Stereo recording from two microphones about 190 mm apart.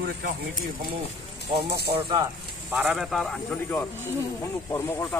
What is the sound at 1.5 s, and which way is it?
Speech, 25° right (ahead or behind).